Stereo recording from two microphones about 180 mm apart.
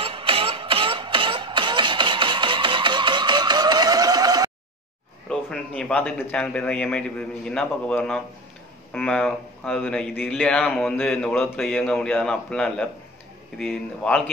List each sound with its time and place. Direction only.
0.0 s music: 30° right (ahead or behind)
5.3 s speech: 5° left (ahead or behind)